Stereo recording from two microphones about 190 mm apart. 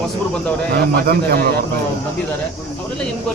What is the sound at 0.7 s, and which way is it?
Speech, 55° right (ahead or behind).